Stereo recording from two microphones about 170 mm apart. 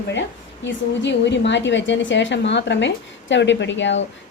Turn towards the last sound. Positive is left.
turn(degrees=90)